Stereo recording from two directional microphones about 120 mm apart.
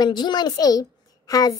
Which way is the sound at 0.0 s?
35° left (ahead or behind).